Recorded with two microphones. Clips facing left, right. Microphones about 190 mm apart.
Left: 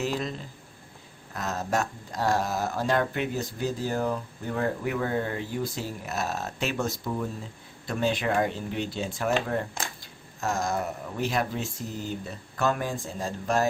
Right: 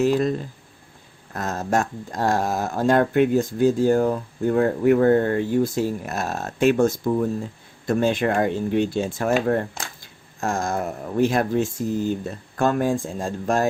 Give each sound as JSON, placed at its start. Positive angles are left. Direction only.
{"t": 0.0, "sound": "speech", "side_deg": -50}
{"t": 10.4, "sound": "speech", "side_deg": -50}